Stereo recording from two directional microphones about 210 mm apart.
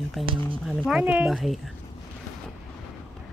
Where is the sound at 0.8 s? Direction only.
5° right (ahead or behind).